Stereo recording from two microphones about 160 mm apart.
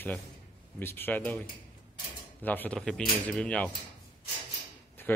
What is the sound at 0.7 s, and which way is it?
Speech, 15° left (ahead or behind).